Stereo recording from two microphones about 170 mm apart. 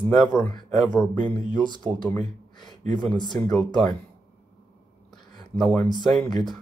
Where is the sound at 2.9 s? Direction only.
Centre (ahead or behind).